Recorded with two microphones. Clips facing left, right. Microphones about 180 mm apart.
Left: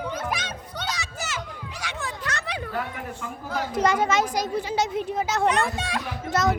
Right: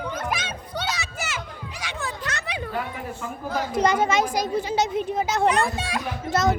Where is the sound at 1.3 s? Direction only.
20° right (ahead or behind).